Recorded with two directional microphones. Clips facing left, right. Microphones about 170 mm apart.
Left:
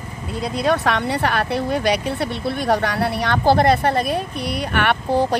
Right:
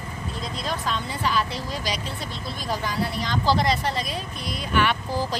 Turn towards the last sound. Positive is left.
turn(degrees=60)  # may be behind; listen again after turning